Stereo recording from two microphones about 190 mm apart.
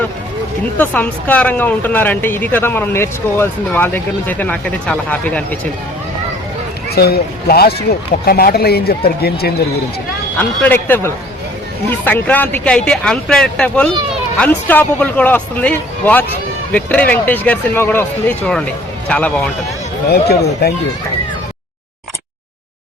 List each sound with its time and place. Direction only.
0.8 s speech: 10° left (ahead or behind)
6.9 s speech: 55° left (ahead or behind)
10.6 s speech: 10° left (ahead or behind)
20.1 s speech: 55° left (ahead or behind)